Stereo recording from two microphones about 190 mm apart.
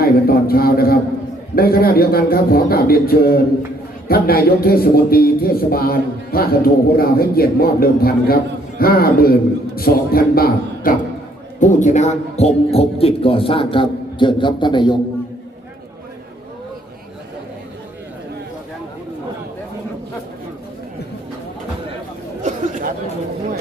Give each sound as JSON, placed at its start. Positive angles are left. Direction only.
{"t": 0.0, "sound": "speech", "side_deg": 50}
{"t": 11.6, "sound": "a man's voice", "side_deg": 40}
{"t": 22.4, "sound": "chatter", "side_deg": -40}